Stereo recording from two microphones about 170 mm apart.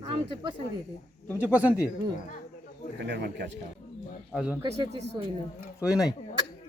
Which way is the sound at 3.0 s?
75° right (ahead or behind).